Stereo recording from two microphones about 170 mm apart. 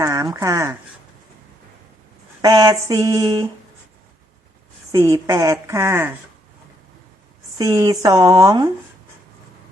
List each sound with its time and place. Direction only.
0.0 s a sound: 20° right (ahead or behind)
0.3 s speech: 15° right (ahead or behind)
2.4 s speech: 20° right (ahead or behind)
4.9 s speech: 20° right (ahead or behind)
7.6 s speech: 20° right (ahead or behind)